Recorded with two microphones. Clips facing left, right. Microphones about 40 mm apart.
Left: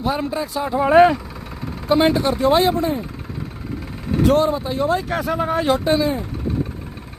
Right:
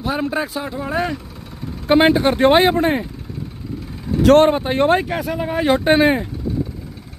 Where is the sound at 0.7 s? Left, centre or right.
Left.